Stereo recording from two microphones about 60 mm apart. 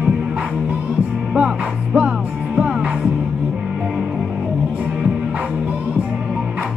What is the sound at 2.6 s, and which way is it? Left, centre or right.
Music, centre.